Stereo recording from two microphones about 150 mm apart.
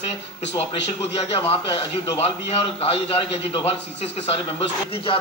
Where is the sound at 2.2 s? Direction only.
40° left (ahead or behind).